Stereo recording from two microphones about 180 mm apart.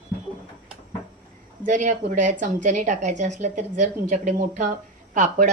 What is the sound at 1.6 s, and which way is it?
Speech, 45° right (ahead or behind).